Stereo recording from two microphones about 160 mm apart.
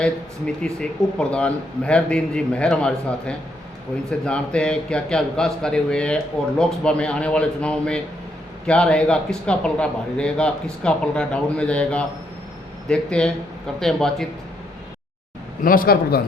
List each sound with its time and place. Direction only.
0.0 s a man's voice: 5° left (ahead or behind)
15.6 s speech: 65° left (ahead or behind)